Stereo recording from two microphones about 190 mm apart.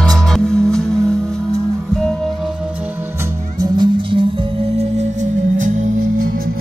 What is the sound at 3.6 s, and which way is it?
Music, 25° right (ahead or behind).